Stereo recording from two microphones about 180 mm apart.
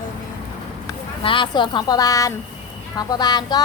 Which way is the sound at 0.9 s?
30° left (ahead or behind).